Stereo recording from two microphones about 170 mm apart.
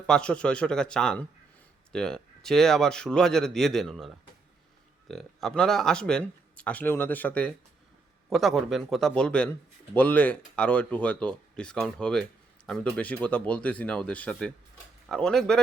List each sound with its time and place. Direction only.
0.1 s speech: 5° left (ahead or behind)